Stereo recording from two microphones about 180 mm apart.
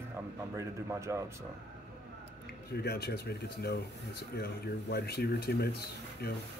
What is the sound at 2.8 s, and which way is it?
Speech, 65° left (ahead or behind).